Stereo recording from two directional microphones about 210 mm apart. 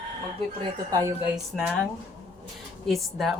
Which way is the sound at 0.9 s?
15° right (ahead or behind).